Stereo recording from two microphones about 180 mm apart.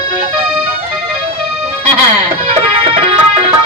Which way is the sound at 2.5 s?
35° right (ahead or behind).